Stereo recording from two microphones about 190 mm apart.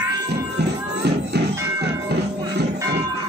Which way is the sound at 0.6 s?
60° right (ahead or behind).